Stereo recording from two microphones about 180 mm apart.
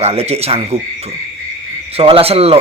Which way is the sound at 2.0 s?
30° right (ahead or behind).